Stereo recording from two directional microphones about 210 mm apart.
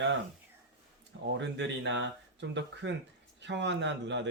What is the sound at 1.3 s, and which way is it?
Speech, 60° right (ahead or behind).